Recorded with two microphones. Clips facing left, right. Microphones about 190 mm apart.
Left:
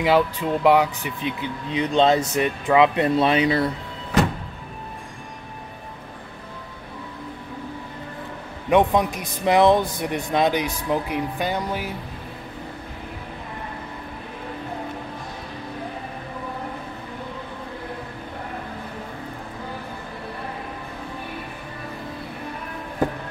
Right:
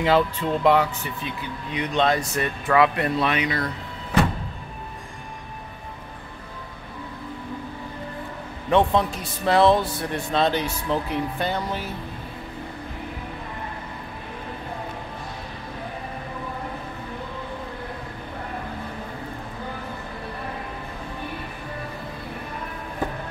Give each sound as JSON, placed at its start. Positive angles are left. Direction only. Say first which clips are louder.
{"t": 0.0, "sound": "speech", "louder": "left 1 dB", "side_deg": 10}
{"t": 1.7, "sound": "speech", "louder": "left 4 dB", "side_deg": 25}
{"t": 8.6, "sound": "speech", "louder": "left 2 dB", "side_deg": 15}